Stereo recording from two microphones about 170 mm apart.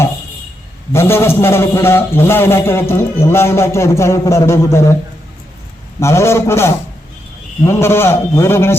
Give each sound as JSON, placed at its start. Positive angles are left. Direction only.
{"t": 0.9, "sound": "a man's voice", "side_deg": 15}
{"t": 6.0, "sound": "a man's voice", "side_deg": 15}